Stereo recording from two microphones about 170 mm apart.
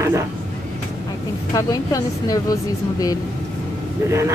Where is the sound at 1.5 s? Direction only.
20° left (ahead or behind).